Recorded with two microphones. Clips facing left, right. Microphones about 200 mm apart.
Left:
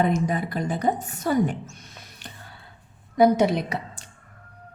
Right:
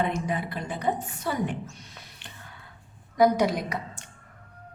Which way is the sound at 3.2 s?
25° left (ahead or behind).